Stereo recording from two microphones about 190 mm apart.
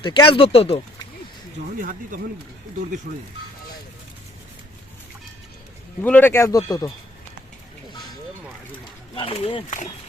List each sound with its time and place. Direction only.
0.0 s speech: 25° left (ahead or behind)
1.8 s speech: 45° right (ahead or behind)
6.0 s speech: 10° left (ahead or behind)
9.1 s speech: 30° left (ahead or behind)